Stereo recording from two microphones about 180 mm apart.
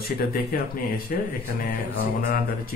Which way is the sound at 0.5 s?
50° left (ahead or behind).